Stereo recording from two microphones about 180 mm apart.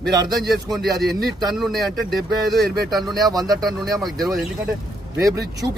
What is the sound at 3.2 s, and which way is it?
Speech, 20° right (ahead or behind).